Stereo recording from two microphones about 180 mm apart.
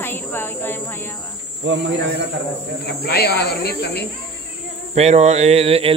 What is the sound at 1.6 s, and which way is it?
Speech, 80° right.